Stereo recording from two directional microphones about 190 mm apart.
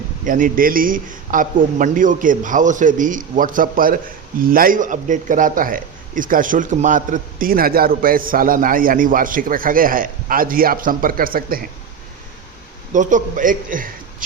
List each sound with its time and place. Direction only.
0.3 s a man's voice: 45° right (ahead or behind)
12.9 s a man's voice: 40° right (ahead or behind)